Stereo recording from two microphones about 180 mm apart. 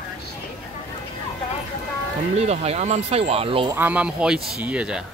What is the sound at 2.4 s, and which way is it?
Speech, 35° right (ahead or behind).